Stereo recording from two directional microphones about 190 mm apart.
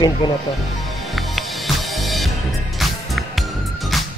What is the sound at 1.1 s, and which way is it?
Music, centre (ahead or behind).